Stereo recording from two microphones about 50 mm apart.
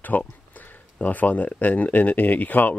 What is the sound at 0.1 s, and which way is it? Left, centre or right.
Speech, left.